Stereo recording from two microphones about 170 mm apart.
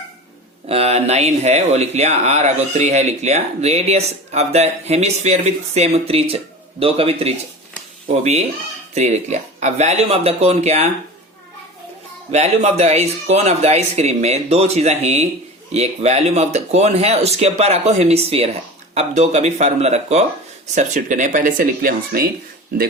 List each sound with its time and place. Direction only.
0.7 s speech: 35° right (ahead or behind)
12.3 s speech: 40° right (ahead or behind); by 22.3 s 60° right (ahead or behind)